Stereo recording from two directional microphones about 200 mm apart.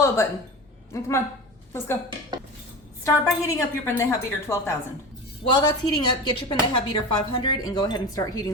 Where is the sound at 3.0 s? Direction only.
15° left (ahead or behind).